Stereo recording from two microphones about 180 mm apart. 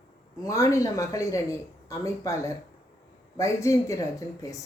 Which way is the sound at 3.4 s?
15° left (ahead or behind).